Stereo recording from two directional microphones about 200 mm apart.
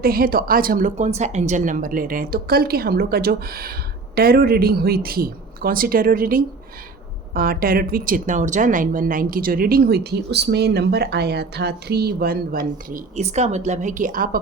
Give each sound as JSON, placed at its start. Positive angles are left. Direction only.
{"t": 0.0, "sound": "speech", "side_deg": -50}